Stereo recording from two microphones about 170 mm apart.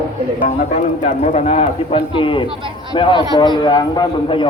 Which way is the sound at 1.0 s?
40° left (ahead or behind).